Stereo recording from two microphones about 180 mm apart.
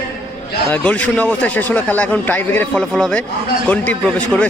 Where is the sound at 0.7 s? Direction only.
10° left (ahead or behind).